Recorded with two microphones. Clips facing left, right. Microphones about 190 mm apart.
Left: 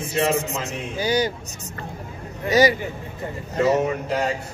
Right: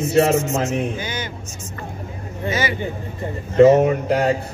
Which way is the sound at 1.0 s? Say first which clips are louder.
Left 8 dB; 35° left (ahead or behind).